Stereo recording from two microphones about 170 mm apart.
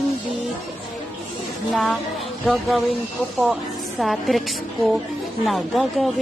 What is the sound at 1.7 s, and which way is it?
A woman's voice, centre (ahead or behind).